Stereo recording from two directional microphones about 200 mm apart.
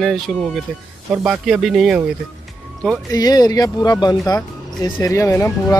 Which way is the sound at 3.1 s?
20° left (ahead or behind).